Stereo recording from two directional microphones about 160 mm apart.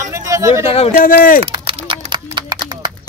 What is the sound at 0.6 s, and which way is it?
Speech, 35° left (ahead or behind).